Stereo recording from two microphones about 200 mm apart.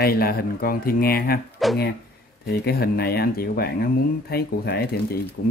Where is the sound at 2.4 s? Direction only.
50° left (ahead or behind).